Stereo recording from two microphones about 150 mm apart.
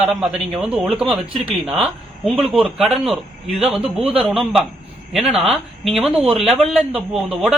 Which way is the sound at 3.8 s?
40° right (ahead or behind).